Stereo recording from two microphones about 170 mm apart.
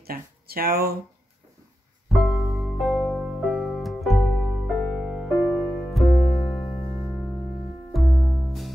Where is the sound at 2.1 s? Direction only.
Centre (ahead or behind).